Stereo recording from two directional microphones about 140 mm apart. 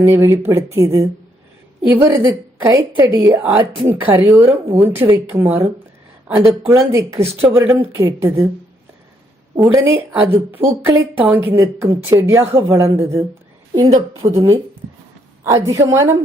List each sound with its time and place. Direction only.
0.0 s a woman's voice: 20° right (ahead or behind)
9.6 s a woman's voice: 20° right (ahead or behind)
13.9 s a woman's voice: 50° right (ahead or behind)
15.6 s a woman's voice: 20° right (ahead or behind)